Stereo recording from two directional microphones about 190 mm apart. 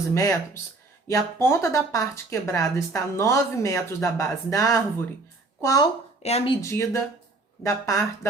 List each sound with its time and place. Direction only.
0.1 s speech: 15° left (ahead or behind)
6.2 s speech: 30° left (ahead or behind)
6.6 s speech: 15° left (ahead or behind)